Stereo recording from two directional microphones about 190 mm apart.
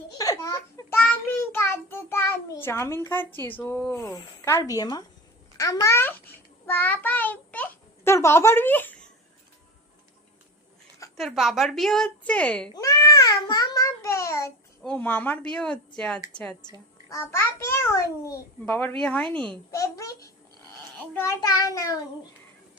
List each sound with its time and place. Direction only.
0.2 s child singing: 20° left (ahead or behind)
3.6 s a woman's voice: 10° left (ahead or behind)
11.2 s a woman's voice: centre (ahead or behind)
12.7 s a sound: 15° left (ahead or behind)
14.8 s a woman's voice: 5° left (ahead or behind)
16.6 s a child's voice: 20° left (ahead or behind)
19.7 s a woman's voice: 15° left (ahead or behind)